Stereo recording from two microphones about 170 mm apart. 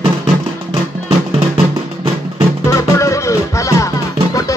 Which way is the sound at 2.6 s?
15° left (ahead or behind).